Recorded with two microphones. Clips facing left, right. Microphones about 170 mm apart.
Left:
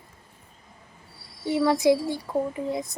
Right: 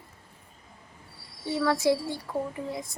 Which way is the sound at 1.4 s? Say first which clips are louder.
Left 4 dB; 20° left (ahead or behind).